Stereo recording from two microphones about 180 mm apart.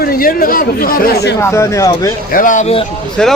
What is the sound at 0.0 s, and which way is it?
Speech, 55° left (ahead or behind).